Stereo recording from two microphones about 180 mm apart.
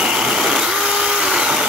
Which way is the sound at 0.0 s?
5° right (ahead or behind).